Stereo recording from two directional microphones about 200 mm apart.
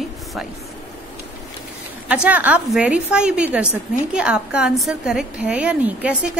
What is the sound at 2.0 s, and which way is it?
A woman's voice, 5° right (ahead or behind).